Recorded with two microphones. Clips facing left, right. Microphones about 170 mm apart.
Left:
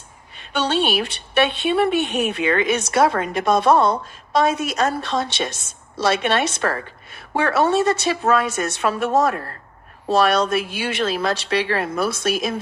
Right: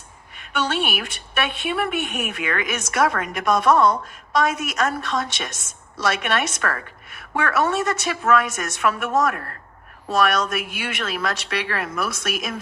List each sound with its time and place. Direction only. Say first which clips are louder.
0.3 s speech: left 3 dB; 30° left (ahead or behind)